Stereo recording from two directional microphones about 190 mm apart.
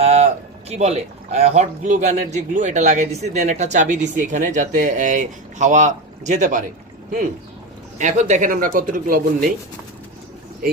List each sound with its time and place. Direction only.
0.0 s a sound: 35° right (ahead or behind)
0.7 s speech: 35° right (ahead or behind)
7.9 s speech: 40° right (ahead or behind)